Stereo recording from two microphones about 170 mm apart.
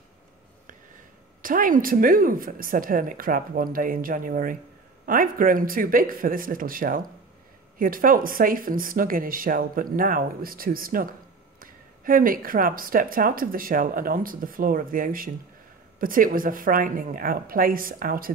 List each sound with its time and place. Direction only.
1.4 s speech: 55° right (ahead or behind)